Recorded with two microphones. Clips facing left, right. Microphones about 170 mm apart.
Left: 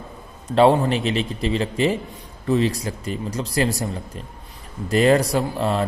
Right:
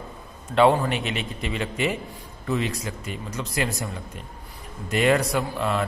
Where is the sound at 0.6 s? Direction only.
35° left (ahead or behind).